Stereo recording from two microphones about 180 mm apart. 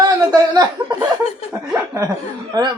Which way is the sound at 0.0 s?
20° right (ahead or behind).